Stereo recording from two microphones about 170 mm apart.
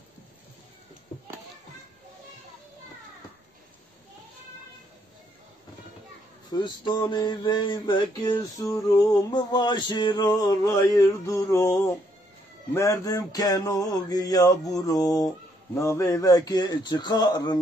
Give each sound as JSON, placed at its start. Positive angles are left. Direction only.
{"t": 6.5, "sound": "mantra", "side_deg": 25}